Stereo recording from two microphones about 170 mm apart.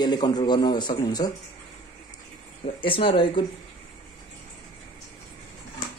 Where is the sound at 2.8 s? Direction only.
30° left (ahead or behind).